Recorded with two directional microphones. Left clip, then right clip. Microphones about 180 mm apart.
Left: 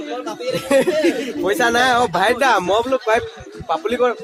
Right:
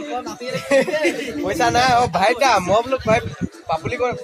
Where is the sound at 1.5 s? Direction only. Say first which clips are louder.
Left 1 dB; 45° left (ahead or behind).